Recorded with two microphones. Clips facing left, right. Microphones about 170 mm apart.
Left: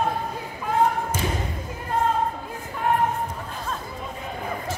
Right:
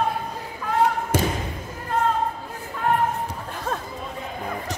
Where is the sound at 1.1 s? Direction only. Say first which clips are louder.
Right 5 dB; 70° right (ahead or behind).